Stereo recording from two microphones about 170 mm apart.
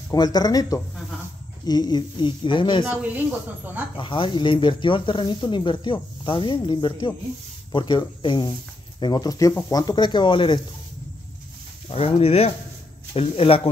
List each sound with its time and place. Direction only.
0.1 s speech: 25° left (ahead or behind)
3.9 s speech: 30° left (ahead or behind)
11.9 s speech: 35° left (ahead or behind)